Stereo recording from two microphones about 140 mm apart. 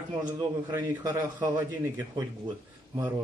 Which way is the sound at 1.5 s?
15° right (ahead or behind).